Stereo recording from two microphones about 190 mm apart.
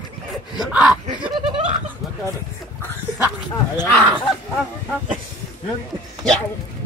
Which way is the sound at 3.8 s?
5° left (ahead or behind).